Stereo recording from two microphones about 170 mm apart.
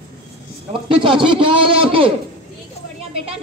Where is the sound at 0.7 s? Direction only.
30° right (ahead or behind).